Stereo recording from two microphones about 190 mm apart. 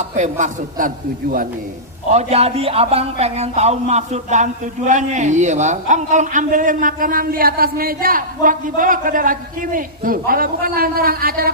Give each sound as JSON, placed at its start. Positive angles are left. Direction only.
{"t": 0.0, "sound": "speech", "side_deg": -40}
{"t": 2.0, "sound": "speech", "side_deg": -35}